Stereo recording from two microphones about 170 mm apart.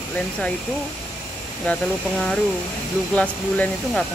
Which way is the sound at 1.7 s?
5° left (ahead or behind).